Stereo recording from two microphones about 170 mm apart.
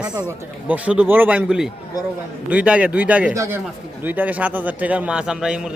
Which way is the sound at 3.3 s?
20° right (ahead or behind).